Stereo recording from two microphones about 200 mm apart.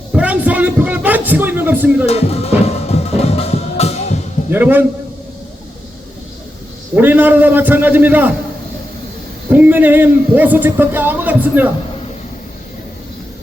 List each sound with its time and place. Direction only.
0.1 s speech: 5° right (ahead or behind)
2.0 s music: 30° left (ahead or behind)
4.5 s speech: 10° right (ahead or behind)
6.9 s speech: 10° right (ahead or behind)
9.5 s speech: 10° right (ahead or behind)